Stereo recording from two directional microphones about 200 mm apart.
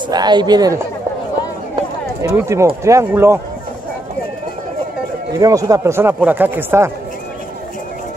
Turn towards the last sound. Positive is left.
turn(degrees=-10)  # may be behind; listen again after turning